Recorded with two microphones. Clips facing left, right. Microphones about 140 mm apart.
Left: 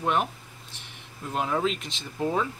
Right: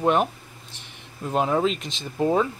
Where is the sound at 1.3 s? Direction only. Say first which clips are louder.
Right 5 dB; 30° right (ahead or behind).